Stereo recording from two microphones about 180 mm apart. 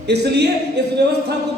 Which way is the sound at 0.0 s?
70° right (ahead or behind).